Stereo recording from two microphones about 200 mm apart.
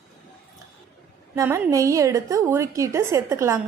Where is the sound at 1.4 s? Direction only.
15° right (ahead or behind).